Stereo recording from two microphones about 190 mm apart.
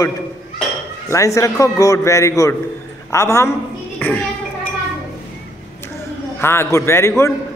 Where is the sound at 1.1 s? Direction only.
15° left (ahead or behind).